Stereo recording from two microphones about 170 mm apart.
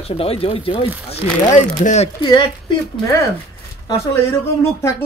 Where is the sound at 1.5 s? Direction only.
45° left (ahead or behind).